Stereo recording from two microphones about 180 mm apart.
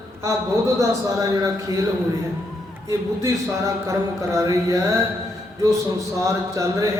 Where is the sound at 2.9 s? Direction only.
15° right (ahead or behind).